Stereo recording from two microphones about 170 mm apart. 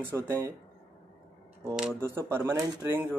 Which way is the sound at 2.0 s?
15° right (ahead or behind).